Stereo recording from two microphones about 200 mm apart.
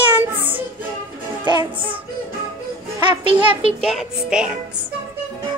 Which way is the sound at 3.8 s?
Centre (ahead or behind).